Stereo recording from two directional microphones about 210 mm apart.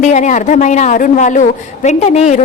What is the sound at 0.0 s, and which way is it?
A woman's voice, 35° left (ahead or behind).